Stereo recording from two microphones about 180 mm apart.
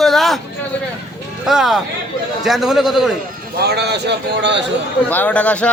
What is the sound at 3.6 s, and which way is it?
Speech, 65° right (ahead or behind).